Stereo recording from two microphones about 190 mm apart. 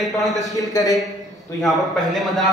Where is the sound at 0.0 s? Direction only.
Centre (ahead or behind).